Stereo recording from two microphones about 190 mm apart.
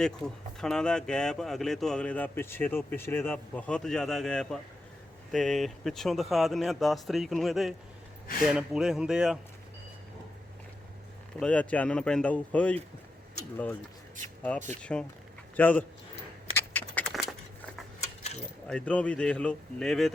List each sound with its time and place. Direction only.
0.0 s speech: 5° left (ahead or behind)
11.3 s speech: 5° left (ahead or behind)
14.8 s speech: 5° left (ahead or behind)
16.6 s a sound: 10° left (ahead or behind)
18.2 s a sound: 35° left (ahead or behind)
18.7 s speech: 5° left (ahead or behind)